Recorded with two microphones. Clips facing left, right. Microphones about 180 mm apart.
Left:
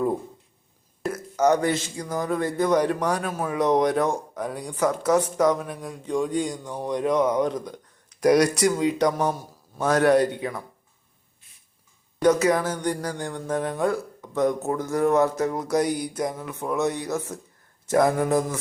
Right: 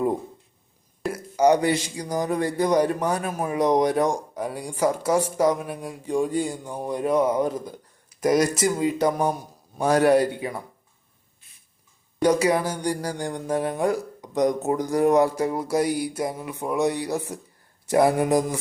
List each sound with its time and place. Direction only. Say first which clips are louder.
1.1 s speech: right 2 dB; 10° right (ahead or behind)
12.2 s speech: even; 10° right (ahead or behind)